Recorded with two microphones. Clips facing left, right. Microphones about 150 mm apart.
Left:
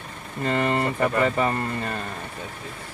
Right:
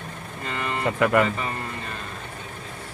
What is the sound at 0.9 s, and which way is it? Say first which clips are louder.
Speech: right 3 dB; 85° right.